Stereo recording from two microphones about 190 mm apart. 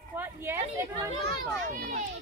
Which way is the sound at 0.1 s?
10° right (ahead or behind).